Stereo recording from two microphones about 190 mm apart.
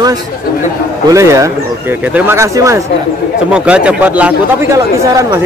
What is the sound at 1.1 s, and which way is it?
Speech, 15° right (ahead or behind).